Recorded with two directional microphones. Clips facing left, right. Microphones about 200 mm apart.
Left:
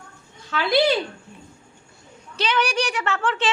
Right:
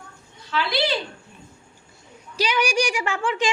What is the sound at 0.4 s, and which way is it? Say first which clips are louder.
Speech: left 5 dB; 50° left (ahead or behind).